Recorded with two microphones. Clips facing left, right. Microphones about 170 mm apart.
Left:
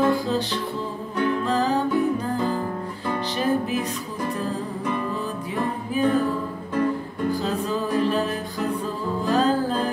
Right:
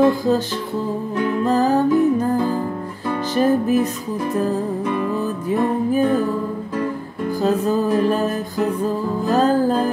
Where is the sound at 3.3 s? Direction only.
45° right (ahead or behind).